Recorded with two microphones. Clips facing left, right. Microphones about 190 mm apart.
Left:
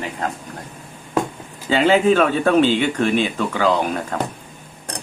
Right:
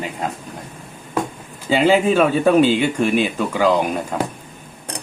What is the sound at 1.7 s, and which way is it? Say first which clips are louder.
Speech: even; 10° right (ahead or behind).